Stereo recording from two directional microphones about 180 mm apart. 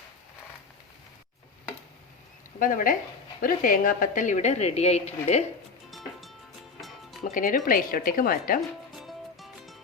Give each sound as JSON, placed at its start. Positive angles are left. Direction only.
{"t": 2.6, "sound": "a woman's voice", "side_deg": 50}
{"t": 5.9, "sound": "music", "side_deg": 0}
{"t": 7.3, "sound": "speech", "side_deg": 45}
{"t": 9.0, "sound": "music", "side_deg": 0}